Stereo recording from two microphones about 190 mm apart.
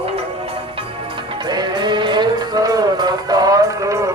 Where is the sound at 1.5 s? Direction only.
20° right (ahead or behind).